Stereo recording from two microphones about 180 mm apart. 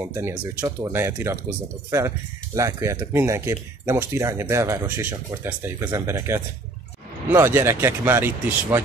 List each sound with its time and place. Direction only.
0.1 s speech: 15° right (ahead or behind)